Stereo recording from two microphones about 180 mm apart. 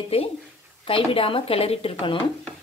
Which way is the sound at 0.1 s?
30° left (ahead or behind).